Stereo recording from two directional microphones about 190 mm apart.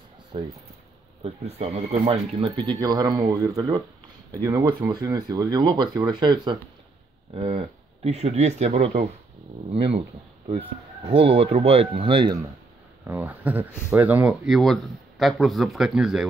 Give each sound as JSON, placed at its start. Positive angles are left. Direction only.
{"t": 0.3, "sound": "speech", "side_deg": -25}
{"t": 11.1, "sound": "speech", "side_deg": -30}
{"t": 13.0, "sound": "speech", "side_deg": -10}